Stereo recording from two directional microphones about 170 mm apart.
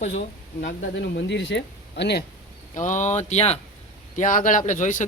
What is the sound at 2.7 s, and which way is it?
A man's voice, 45° left (ahead or behind).